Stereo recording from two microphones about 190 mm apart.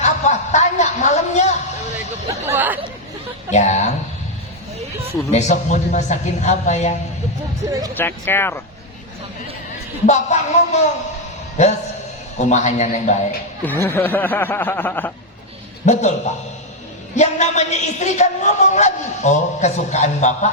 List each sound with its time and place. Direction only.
0.0 s a sound: 40° left (ahead or behind)
2.3 s a sound: 10° right (ahead or behind)
3.5 s a sound: 35° left (ahead or behind)
5.3 s a man's voice: 40° left (ahead or behind)
7.7 s speech: 20° right (ahead or behind)
7.9 s speech: 10° left (ahead or behind)
10.1 s a man's voice: 40° left (ahead or behind)
13.7 s speech: 10° left (ahead or behind)
15.9 s a man's voice: 35° left (ahead or behind)
17.2 s a man's voice: 35° left (ahead or behind)